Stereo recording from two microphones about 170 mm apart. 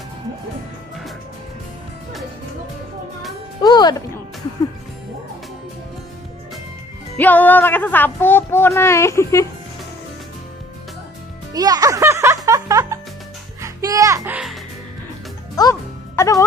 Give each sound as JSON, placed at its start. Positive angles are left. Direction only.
{"t": 3.6, "sound": "music", "side_deg": 25}
{"t": 7.2, "sound": "speech", "side_deg": 10}
{"t": 11.5, "sound": "speech", "side_deg": -20}
{"t": 12.4, "sound": "music", "side_deg": -20}
{"t": 15.5, "sound": "music", "side_deg": 20}